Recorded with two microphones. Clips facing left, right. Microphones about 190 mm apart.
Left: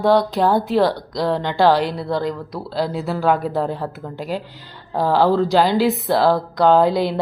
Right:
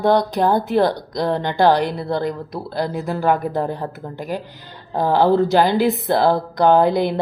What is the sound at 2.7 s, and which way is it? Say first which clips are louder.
Speech: left 1 dB; 50° right (ahead or behind).